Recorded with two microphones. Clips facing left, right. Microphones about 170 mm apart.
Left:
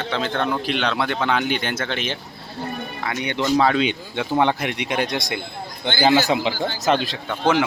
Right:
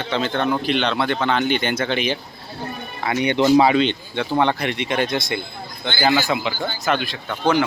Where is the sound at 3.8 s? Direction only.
10° left (ahead or behind).